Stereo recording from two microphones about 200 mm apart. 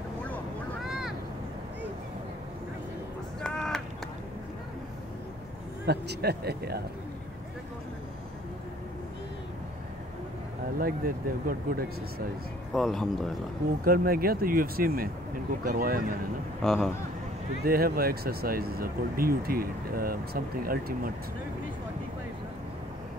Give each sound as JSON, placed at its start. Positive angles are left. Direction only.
{"t": 0.8, "sound": "vehicle", "side_deg": -5}
{"t": 3.3, "sound": "a sound", "side_deg": 0}
{"t": 5.9, "sound": "speech", "side_deg": -55}
{"t": 10.8, "sound": "speech", "side_deg": -45}
{"t": 12.7, "sound": "speech", "side_deg": 0}
{"t": 13.8, "sound": "speech", "side_deg": -45}
{"t": 16.6, "sound": "speech", "side_deg": 0}
{"t": 17.6, "sound": "speech", "side_deg": -45}